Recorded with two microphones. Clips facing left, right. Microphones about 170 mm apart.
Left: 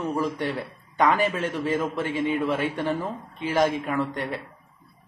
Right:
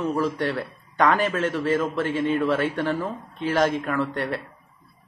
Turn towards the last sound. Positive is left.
turn(degrees=10)  # may be behind; listen again after turning